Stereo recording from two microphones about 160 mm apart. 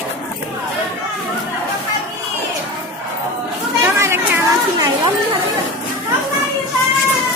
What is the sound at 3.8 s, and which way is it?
Chatter, 15° right (ahead or behind).